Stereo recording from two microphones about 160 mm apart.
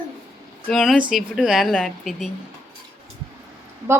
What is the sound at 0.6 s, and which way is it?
Speech, 5° left (ahead or behind).